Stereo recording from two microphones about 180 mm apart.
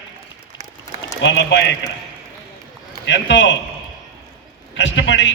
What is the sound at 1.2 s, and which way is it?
Speech, 75° left (ahead or behind).